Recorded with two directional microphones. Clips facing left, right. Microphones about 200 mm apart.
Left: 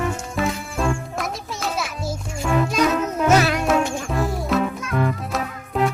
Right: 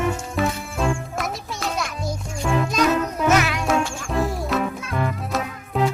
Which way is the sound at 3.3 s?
35° left (ahead or behind).